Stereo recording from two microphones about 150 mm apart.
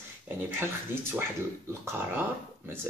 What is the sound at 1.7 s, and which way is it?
Speech, 15° right (ahead or behind).